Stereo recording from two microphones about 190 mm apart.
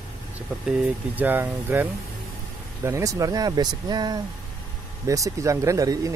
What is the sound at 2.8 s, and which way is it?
Speech, 15° right (ahead or behind).